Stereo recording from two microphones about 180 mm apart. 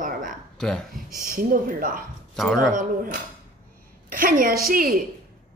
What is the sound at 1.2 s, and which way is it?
Speech, 50° right (ahead or behind).